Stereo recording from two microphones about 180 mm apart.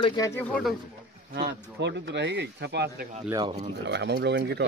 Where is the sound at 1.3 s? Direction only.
65° right (ahead or behind).